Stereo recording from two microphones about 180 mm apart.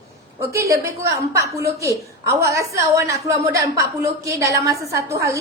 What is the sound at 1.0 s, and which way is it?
A woman's voice, 15° right (ahead or behind).